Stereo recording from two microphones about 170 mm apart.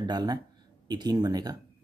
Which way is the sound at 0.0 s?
25° right (ahead or behind).